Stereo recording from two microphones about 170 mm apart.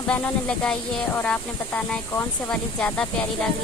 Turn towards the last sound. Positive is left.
turn(degrees=5)  # may be behind; listen again after turning